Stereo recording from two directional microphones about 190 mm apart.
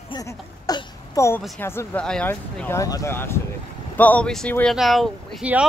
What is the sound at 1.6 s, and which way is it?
Speech, 10° left (ahead or behind).